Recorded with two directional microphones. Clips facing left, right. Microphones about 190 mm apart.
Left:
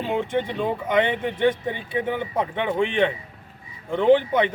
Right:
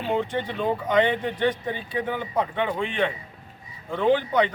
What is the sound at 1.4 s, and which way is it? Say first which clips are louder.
A man's voice: left 3 dB; 20° left (ahead or behind).